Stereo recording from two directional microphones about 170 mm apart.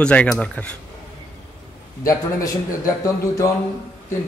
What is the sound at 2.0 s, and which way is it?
A man's voice, 20° left (ahead or behind).